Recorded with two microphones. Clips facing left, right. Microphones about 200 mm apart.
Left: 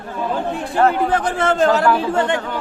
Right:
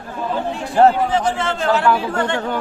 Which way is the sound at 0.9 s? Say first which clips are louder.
Even; 55° left (ahead or behind).